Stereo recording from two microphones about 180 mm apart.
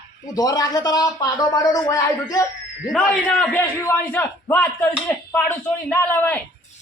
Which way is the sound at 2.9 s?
5° left (ahead or behind).